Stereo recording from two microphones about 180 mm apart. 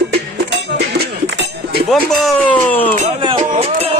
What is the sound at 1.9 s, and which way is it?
Speech, centre (ahead or behind).